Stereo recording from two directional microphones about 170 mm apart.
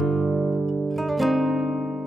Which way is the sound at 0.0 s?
Centre (ahead or behind).